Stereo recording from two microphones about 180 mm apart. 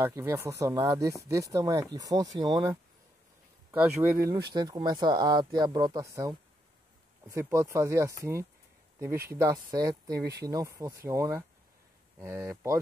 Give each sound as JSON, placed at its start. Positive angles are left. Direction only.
{"t": 0.0, "sound": "speech", "side_deg": -15}
{"t": 3.7, "sound": "speech", "side_deg": -10}
{"t": 4.5, "sound": "speech", "side_deg": -25}
{"t": 7.2, "sound": "speech", "side_deg": -15}